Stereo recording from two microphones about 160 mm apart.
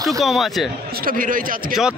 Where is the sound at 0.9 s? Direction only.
65° right (ahead or behind).